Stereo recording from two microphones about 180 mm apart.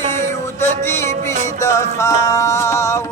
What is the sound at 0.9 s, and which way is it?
Music, 15° left (ahead or behind).